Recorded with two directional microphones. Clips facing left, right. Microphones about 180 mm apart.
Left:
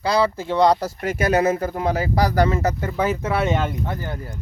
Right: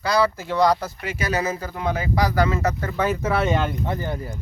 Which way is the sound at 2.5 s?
25° left (ahead or behind).